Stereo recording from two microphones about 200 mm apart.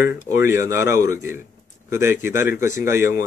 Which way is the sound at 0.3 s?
15° right (ahead or behind).